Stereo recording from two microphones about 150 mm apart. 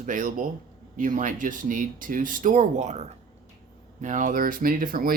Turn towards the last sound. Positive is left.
turn(degrees=-70)  # may be behind; listen again after turning